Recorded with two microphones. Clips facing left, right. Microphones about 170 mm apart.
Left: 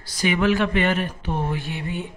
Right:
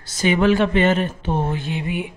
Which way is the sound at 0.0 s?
25° right (ahead or behind).